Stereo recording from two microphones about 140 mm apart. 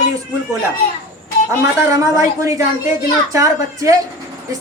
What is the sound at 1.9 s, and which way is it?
A woman's voice, 20° right (ahead or behind).